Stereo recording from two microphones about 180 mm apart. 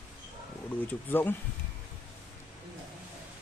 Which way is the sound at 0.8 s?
10° left (ahead or behind).